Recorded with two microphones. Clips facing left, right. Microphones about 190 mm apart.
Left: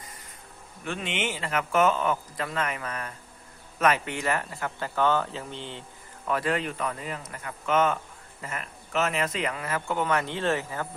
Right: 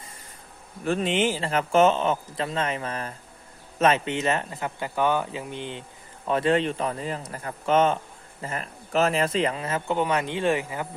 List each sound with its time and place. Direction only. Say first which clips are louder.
0.9 s a man's voice: right 8 dB; 35° right (ahead or behind); by 10.8 s 15° right (ahead or behind)